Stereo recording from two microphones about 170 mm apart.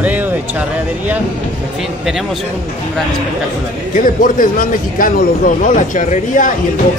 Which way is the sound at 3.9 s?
50° left (ahead or behind).